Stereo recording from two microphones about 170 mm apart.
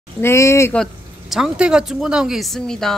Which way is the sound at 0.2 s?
15° left (ahead or behind).